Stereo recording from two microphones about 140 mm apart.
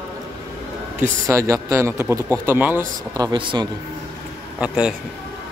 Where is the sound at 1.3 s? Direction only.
20° right (ahead or behind).